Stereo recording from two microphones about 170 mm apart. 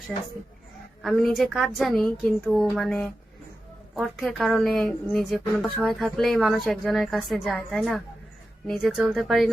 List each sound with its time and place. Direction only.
1.0 s a woman's voice: centre (ahead or behind)